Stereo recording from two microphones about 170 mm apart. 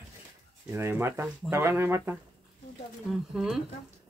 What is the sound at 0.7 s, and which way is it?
Speech, 15° right (ahead or behind).